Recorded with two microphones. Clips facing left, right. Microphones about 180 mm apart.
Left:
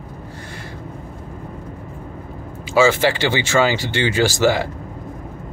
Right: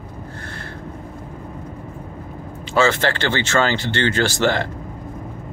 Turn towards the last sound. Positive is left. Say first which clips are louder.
# left 2 dB
turn(degrees=10)  # may be behind; listen again after turning